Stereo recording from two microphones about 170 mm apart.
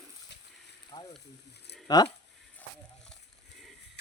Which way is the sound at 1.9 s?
20° left (ahead or behind).